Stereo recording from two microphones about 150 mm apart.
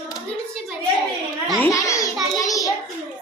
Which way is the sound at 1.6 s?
20° left (ahead or behind).